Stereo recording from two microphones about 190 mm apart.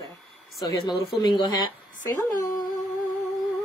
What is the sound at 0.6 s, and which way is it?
A woman's voice, 25° left (ahead or behind).